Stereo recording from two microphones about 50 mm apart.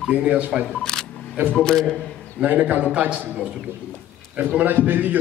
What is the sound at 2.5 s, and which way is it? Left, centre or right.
A man's voice, right.